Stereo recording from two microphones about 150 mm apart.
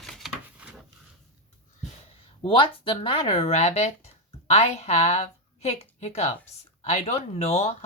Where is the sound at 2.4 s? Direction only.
35° left (ahead or behind).